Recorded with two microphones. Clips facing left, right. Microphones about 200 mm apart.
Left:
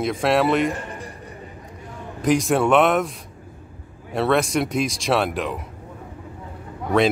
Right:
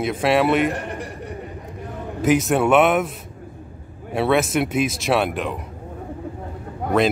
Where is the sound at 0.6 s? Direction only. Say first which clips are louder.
Right 2 dB; 65° right (ahead or behind).